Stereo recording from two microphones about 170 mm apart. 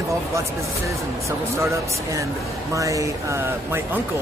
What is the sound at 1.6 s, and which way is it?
Speech, 15° right (ahead or behind).